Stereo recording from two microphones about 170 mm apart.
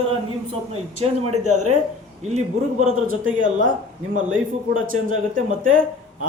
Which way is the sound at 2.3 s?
45° right (ahead or behind).